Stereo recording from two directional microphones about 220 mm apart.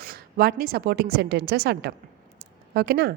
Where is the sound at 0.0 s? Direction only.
45° right (ahead or behind).